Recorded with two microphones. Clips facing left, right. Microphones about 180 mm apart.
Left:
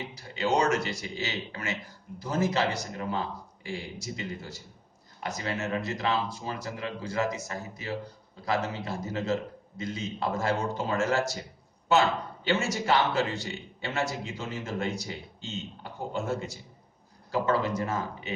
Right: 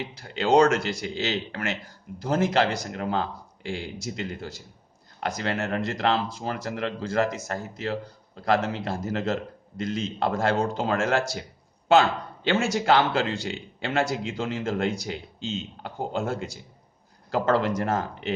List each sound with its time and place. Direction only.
0.3 s a man's voice: 90° right
5.2 s a man's voice: 75° right (ahead or behind); by 11.4 s 90° right
12.5 s a man's voice: 80° right